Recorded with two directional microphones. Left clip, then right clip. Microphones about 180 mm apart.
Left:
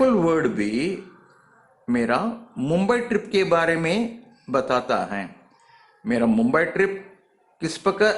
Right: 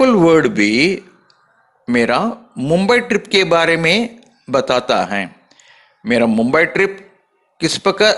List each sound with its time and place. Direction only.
0.0 s a man's voice: 25° right (ahead or behind)
1.9 s a man's voice: 25° right (ahead or behind)
2.6 s speech: 15° right (ahead or behind)
2.8 s a man's voice: 25° right (ahead or behind)